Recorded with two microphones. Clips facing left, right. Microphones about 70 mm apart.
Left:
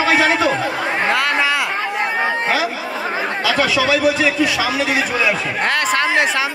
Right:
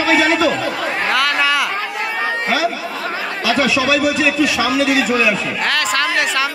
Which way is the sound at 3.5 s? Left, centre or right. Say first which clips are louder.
Right 2 dB; left.